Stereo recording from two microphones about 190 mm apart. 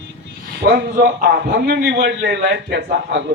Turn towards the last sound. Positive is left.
turn(degrees=-65)  # may be behind; listen again after turning